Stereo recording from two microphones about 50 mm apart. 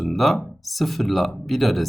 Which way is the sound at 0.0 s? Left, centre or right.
Centre.